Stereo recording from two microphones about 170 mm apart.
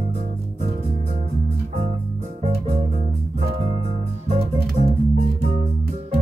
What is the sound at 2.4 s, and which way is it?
Music, 40° right (ahead or behind).